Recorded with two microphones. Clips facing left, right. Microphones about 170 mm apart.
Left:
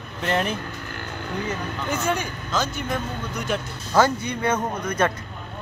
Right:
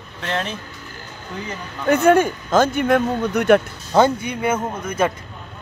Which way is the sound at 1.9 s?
55° right (ahead or behind).